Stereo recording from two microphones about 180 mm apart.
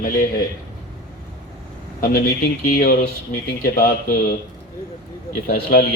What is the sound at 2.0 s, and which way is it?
Speech, 55° left (ahead or behind).